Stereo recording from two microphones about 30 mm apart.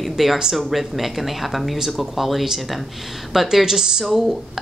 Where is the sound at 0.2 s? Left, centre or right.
Centre.